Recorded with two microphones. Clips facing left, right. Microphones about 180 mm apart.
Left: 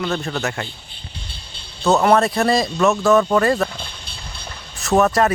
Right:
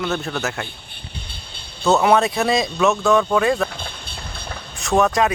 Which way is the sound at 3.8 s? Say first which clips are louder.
Right 2 dB; 55° right (ahead or behind).